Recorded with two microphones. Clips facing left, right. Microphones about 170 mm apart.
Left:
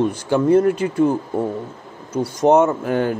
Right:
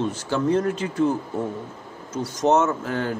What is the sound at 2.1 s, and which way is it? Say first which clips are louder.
A man's voice: left 5 dB; 10° left (ahead or behind).